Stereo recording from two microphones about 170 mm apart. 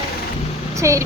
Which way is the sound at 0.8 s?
15° right (ahead or behind).